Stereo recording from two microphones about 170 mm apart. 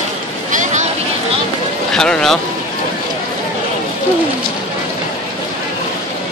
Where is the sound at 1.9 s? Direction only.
5° left (ahead or behind).